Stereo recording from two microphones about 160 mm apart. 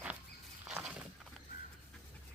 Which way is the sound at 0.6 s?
5° right (ahead or behind).